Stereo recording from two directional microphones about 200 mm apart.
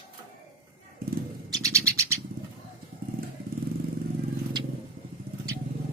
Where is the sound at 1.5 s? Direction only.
15° right (ahead or behind).